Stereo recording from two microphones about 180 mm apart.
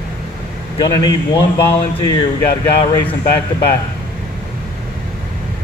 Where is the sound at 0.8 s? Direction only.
20° left (ahead or behind).